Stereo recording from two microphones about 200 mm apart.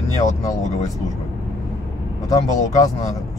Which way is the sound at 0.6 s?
35° left (ahead or behind).